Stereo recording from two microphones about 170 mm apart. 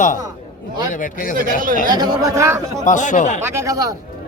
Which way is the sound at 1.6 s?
55° right (ahead or behind).